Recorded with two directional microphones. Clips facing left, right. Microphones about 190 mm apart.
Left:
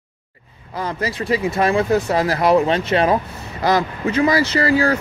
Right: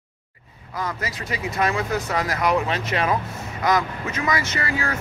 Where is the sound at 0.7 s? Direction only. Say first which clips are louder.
Left 5 dB; 30° left (ahead or behind).